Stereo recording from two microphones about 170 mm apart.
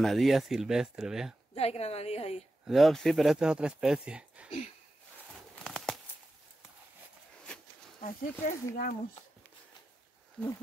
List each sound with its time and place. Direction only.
0.0 s speech: centre (ahead or behind)
1.5 s a woman's voice: 35° left (ahead or behind)
2.6 s speech: centre (ahead or behind)
5.6 s a sound: centre (ahead or behind)
7.5 s a sound: 5° left (ahead or behind)
8.0 s speech: 50° left (ahead or behind)